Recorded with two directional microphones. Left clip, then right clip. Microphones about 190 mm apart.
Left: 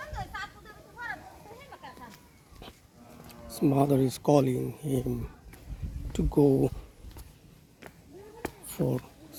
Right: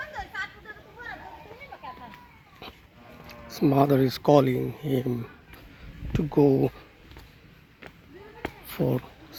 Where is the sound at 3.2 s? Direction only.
Centre (ahead or behind).